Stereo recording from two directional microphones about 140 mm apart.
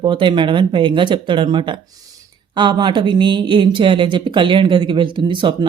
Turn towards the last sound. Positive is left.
turn(degrees=-35)  # may be behind; listen again after turning